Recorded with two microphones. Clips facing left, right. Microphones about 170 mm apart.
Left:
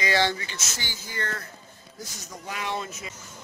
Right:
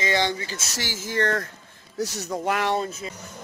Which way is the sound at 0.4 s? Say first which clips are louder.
Right 4 dB; 30° right (ahead or behind).